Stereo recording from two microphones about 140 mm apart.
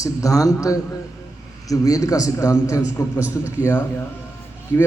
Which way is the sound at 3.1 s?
10° right (ahead or behind).